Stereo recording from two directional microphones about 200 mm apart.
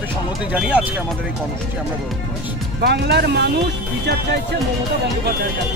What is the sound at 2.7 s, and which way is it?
Speech, 55° right (ahead or behind).